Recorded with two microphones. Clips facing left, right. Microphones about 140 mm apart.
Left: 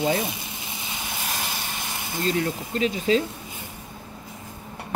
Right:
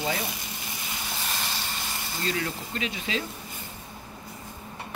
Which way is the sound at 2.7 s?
40° left (ahead or behind).